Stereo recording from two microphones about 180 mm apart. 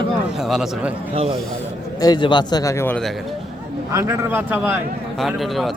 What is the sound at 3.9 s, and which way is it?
A man's voice, 15° right (ahead or behind).